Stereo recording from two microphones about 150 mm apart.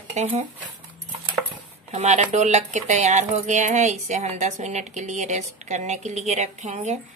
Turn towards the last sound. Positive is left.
turn(degrees=-50)  # may be behind; listen again after turning